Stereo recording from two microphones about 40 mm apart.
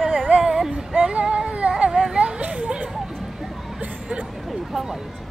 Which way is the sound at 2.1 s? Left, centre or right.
Right.